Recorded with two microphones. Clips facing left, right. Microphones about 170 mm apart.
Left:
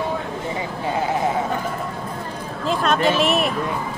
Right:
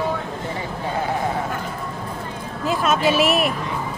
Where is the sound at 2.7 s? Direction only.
5° right (ahead or behind).